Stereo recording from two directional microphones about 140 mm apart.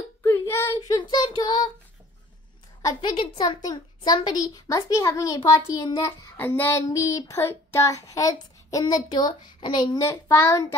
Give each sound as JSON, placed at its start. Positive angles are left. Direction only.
{"t": 0.2, "sound": "child singing", "side_deg": 20}
{"t": 0.7, "sound": "child singing", "side_deg": 30}
{"t": 2.8, "sound": "child singing", "side_deg": 30}
{"t": 6.3, "sound": "child singing", "side_deg": 15}
{"t": 10.0, "sound": "child singing", "side_deg": 20}